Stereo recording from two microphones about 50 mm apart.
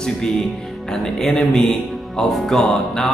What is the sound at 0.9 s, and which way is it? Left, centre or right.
Speech, centre.